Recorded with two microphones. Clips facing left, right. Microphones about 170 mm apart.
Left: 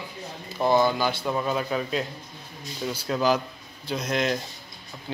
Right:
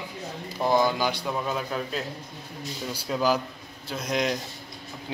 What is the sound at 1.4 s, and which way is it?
Speech, centre (ahead or behind).